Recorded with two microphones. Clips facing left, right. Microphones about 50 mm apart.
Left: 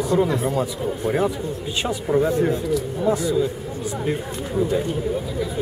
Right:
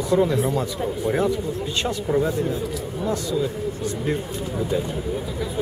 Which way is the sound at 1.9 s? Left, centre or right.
Centre.